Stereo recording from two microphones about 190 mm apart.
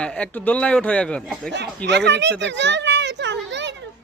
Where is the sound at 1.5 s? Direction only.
65° right (ahead or behind).